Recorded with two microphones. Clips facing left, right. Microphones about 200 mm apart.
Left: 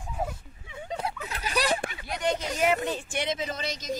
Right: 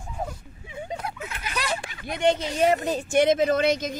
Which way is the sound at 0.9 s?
30° left (ahead or behind).